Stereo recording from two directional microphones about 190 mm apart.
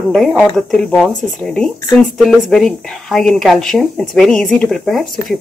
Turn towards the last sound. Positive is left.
turn(degrees=0)  # may be behind; listen again after turning